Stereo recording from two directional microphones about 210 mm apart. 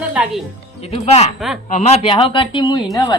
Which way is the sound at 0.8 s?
30° left (ahead or behind).